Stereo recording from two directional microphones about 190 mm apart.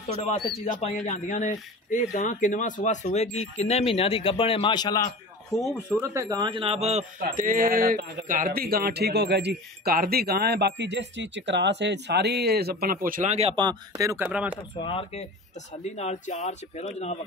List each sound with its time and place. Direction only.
0.1 s speech: 35° left (ahead or behind); by 5.6 s 15° left (ahead or behind)
5.9 s speech: 10° right (ahead or behind)
6.2 s speech: 25° right (ahead or behind)
14.8 s speech: 25° left (ahead or behind)
15.7 s speech: 35° left (ahead or behind)